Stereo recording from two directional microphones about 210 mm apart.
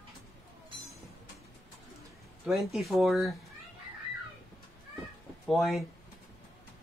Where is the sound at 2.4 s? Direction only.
Centre (ahead or behind).